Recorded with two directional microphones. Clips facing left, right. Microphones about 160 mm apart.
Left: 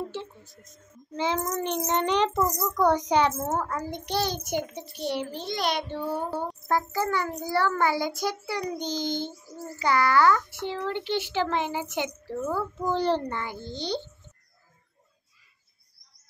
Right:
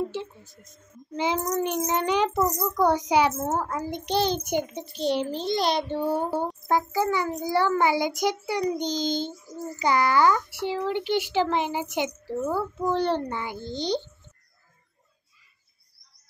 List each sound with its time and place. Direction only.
0.4 s a child's voice: centre (ahead or behind)
1.1 s a child's voice: 15° right (ahead or behind)
4.1 s child singing: 20° right (ahead or behind)
5.3 s a child's voice: 30° right (ahead or behind)
6.3 s a child's voice: 10° right (ahead or behind)
13.3 s a child's voice: 15° right (ahead or behind)